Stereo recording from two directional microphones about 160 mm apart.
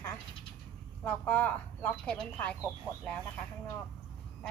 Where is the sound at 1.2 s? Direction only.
10° left (ahead or behind).